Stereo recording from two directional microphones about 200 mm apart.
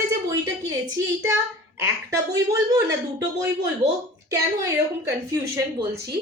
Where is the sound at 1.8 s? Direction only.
15° right (ahead or behind).